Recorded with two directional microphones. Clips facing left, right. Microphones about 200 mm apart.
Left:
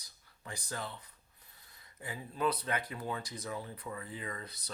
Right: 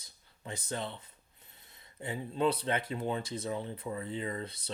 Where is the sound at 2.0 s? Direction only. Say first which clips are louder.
Right 4 dB; 25° right (ahead or behind).